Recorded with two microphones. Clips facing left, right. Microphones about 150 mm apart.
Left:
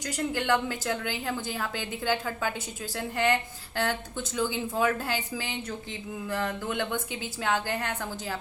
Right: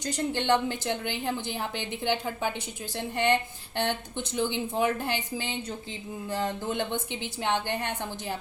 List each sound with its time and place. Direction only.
0.0 s a woman's voice: 30° right (ahead or behind)
4.4 s a woman's voice: 25° right (ahead or behind)